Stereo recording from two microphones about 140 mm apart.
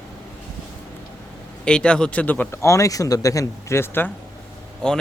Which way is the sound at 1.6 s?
5° left (ahead or behind).